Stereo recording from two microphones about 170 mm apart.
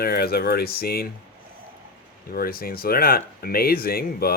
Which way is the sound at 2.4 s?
60° left (ahead or behind).